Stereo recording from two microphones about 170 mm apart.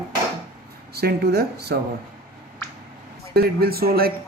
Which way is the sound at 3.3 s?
65° right (ahead or behind).